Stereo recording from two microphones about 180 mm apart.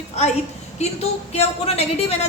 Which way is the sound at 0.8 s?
35° left (ahead or behind).